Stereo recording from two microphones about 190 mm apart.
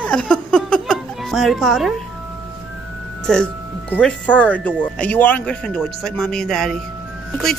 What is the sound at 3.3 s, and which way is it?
Speech, 5° left (ahead or behind).